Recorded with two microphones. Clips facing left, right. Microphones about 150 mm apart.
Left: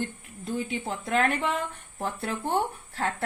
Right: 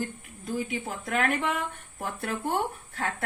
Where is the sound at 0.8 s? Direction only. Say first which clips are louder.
Left 4 dB; 30° left (ahead or behind).